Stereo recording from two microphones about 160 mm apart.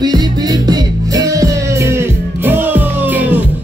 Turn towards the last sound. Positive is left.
turn(degrees=-10)  # may be behind; listen again after turning